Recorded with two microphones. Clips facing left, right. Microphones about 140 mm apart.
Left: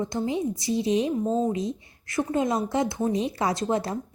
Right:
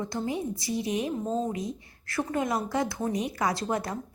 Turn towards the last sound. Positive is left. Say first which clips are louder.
# left 3 dB
turn(degrees=25)  # may be behind; listen again after turning